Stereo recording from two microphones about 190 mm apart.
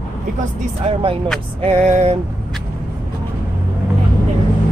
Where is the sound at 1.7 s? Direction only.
35° right (ahead or behind).